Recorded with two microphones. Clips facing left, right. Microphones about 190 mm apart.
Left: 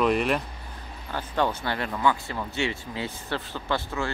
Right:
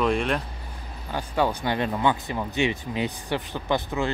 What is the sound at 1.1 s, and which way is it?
Speech, 10° right (ahead or behind).